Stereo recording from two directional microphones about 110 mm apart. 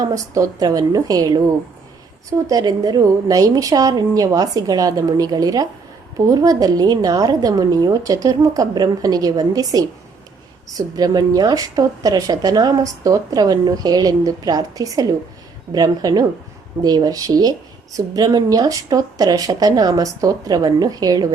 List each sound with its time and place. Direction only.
0.0 s a woman's voice: 30° right (ahead or behind)